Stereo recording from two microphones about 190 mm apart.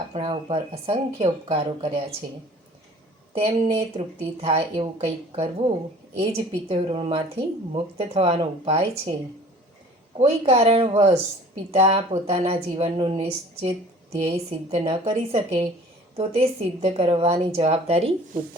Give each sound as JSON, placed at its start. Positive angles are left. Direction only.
{"t": 0.1, "sound": "speech", "side_deg": -30}
{"t": 3.3, "sound": "a woman's voice", "side_deg": -30}
{"t": 10.2, "sound": "a woman's voice", "side_deg": -30}